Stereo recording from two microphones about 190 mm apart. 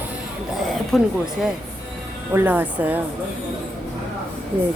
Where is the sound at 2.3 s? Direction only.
10° right (ahead or behind).